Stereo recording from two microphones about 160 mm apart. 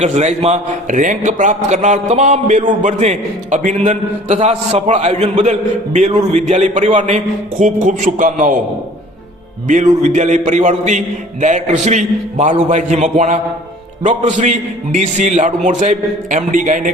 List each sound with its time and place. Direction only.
0.0 s a man's voice: 45° right (ahead or behind)
9.6 s a man's voice: 50° right (ahead or behind)